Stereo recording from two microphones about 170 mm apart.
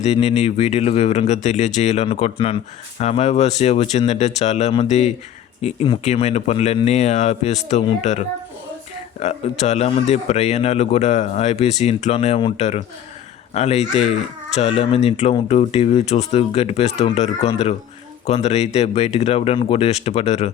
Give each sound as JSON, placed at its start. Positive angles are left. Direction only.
{"t": 0.0, "sound": "speech", "side_deg": 40}